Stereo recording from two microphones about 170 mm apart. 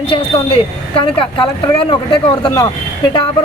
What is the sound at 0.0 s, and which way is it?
A woman's voice, 35° left (ahead or behind).